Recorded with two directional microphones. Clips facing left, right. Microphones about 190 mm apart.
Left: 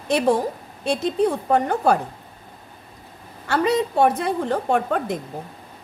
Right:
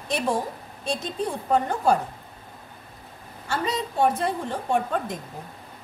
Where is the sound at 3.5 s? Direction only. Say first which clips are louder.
Left 8 dB; 65° left (ahead or behind).